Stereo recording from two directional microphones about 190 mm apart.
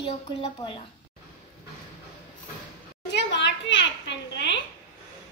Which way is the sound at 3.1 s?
65° left (ahead or behind).